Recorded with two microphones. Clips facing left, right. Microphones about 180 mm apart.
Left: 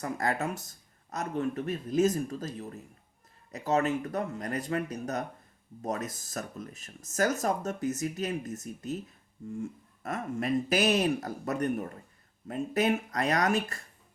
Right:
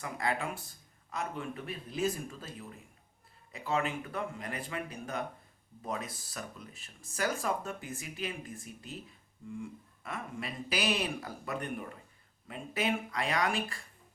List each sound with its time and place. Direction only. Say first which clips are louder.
0.0 s speech: left 4 dB; 45° left (ahead or behind)